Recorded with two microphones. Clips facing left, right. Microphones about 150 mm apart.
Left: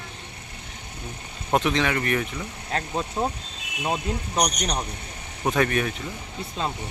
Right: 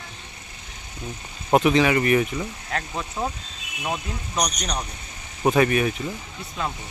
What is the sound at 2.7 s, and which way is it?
Speech, 30° left (ahead or behind).